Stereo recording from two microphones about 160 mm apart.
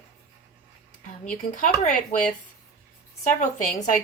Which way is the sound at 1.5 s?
50° left (ahead or behind).